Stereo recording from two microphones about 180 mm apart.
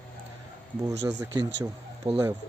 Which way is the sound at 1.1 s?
15° right (ahead or behind).